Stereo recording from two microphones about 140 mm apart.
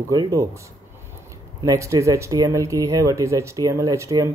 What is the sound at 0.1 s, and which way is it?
Speech, 25° right (ahead or behind).